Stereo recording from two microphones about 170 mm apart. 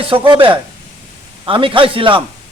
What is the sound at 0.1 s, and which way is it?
A man's voice, 30° right (ahead or behind).